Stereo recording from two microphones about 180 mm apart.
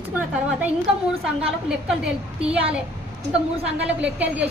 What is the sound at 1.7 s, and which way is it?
Speech, 5° right (ahead or behind).